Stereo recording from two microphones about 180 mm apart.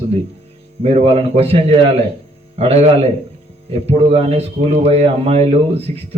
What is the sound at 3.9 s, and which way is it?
A man's voice, 35° right (ahead or behind).